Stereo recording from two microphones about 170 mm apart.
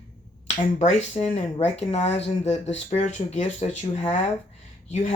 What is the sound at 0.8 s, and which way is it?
Speech, 40° left (ahead or behind).